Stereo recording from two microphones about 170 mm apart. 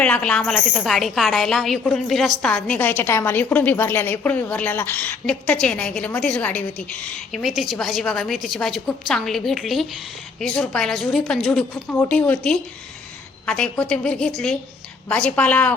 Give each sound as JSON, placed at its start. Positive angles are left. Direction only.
{"t": 0.0, "sound": "a woman's voice", "side_deg": 5}